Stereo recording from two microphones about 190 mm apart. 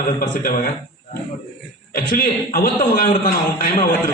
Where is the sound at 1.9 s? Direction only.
50° left (ahead or behind).